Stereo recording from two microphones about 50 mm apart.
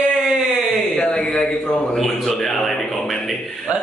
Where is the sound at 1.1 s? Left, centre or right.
Centre.